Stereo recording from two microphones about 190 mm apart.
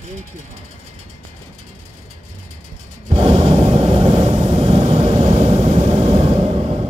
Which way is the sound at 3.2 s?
30° right (ahead or behind).